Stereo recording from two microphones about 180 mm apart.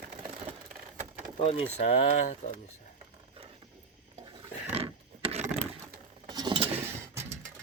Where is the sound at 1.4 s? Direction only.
35° left (ahead or behind).